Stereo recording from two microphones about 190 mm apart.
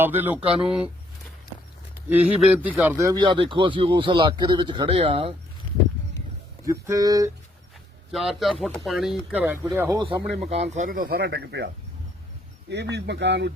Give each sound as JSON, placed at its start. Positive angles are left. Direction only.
{"t": 0.0, "sound": "speech", "side_deg": -10}
{"t": 2.0, "sound": "speech", "side_deg": -10}
{"t": 6.8, "sound": "speech", "side_deg": -20}
{"t": 8.1, "sound": "speech", "side_deg": 0}
{"t": 10.0, "sound": "speech", "side_deg": -25}
{"t": 10.5, "sound": "speech", "side_deg": -35}
{"t": 12.7, "sound": "speech", "side_deg": -65}